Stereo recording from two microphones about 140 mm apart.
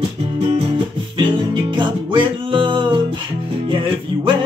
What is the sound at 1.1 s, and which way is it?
Music, 35° right (ahead or behind).